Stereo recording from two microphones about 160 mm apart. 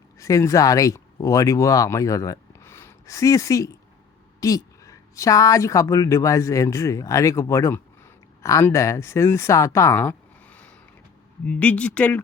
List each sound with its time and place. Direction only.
0.2 s a woman's voice: 20° left (ahead or behind)